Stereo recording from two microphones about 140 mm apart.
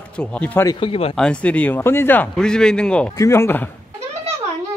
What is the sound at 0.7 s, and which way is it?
Speech, 40° left (ahead or behind).